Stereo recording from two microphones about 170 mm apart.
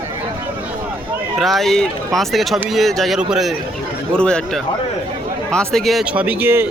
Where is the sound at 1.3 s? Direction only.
Centre (ahead or behind).